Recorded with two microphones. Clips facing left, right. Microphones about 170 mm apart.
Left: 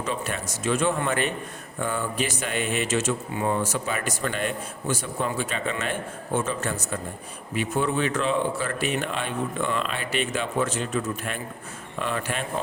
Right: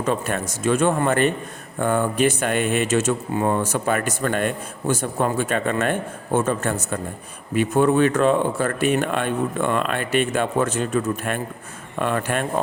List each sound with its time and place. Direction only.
0.0 s speech: 50° right (ahead or behind)